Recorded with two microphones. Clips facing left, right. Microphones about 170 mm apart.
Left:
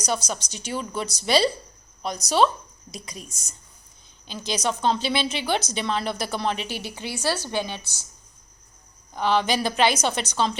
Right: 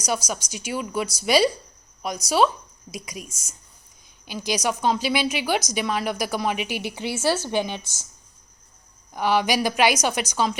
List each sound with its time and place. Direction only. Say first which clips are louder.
0.0 s a woman's voice: right 1 dB; 10° right (ahead or behind)
4.3 s a woman's voice: right 2 dB; 10° right (ahead or behind)
9.1 s a woman's voice: right 1 dB; 10° right (ahead or behind)